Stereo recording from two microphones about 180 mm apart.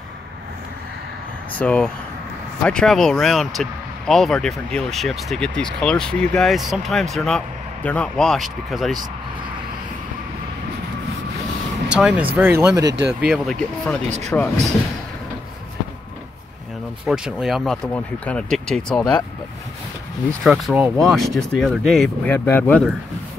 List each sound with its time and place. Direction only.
1.5 s speech: 5° left (ahead or behind)
11.9 s speech: 5° right (ahead or behind)
13.2 s speech: centre (ahead or behind)
14.0 s speech: 40° right (ahead or behind)
17.0 s speech: 5° right (ahead or behind)
20.4 s speech: centre (ahead or behind)